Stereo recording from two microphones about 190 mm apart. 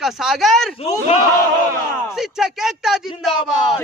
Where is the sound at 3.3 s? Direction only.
30° left (ahead or behind).